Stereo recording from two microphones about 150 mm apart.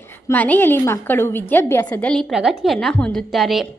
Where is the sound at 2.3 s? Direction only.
Centre (ahead or behind).